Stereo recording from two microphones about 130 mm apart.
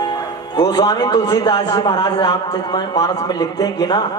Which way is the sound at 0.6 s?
30° left (ahead or behind).